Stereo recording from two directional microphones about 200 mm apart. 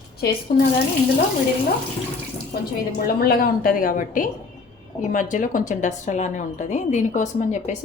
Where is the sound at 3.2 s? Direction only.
45° left (ahead or behind).